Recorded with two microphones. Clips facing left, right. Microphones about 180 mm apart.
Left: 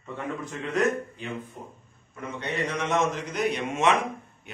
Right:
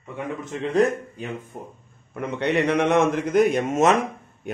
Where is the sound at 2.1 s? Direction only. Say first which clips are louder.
Right 9 dB; 65° right (ahead or behind); by 4.0 s 40° right (ahead or behind).